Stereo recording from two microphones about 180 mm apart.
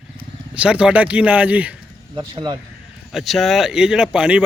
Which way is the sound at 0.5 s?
5° right (ahead or behind).